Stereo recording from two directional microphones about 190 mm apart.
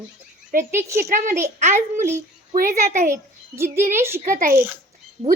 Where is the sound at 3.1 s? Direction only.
15° right (ahead or behind).